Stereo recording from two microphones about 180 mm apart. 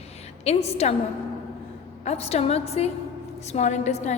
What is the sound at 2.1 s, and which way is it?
A woman's voice, 35° left (ahead or behind).